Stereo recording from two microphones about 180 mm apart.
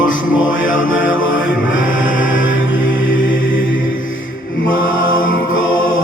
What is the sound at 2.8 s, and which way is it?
Music, 50° left (ahead or behind).